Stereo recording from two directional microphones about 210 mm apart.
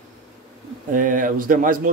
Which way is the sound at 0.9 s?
40° right (ahead or behind).